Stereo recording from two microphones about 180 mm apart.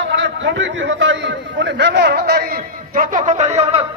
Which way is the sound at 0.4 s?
90° right.